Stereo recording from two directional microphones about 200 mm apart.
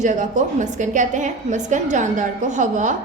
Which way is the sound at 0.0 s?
40° right (ahead or behind).